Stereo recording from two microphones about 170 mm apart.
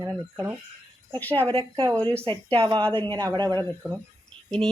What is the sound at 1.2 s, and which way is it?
Speech, 10° left (ahead or behind).